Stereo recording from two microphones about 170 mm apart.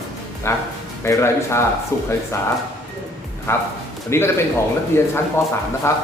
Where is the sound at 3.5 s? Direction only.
15° left (ahead or behind).